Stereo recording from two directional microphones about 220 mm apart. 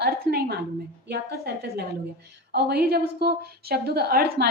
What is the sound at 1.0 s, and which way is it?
A woman's voice, 45° right (ahead or behind).